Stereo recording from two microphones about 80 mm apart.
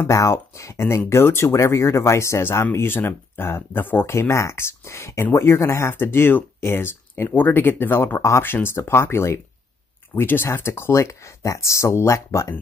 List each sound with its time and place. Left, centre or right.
0.0 s speech: left